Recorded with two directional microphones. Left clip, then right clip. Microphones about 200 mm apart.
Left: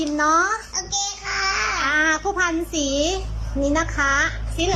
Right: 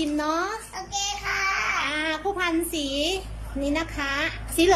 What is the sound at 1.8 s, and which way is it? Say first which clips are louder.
A child's voice: left 7 dB; centre (ahead or behind).